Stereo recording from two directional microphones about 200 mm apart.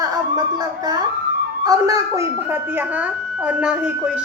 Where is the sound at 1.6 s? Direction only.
15° right (ahead or behind).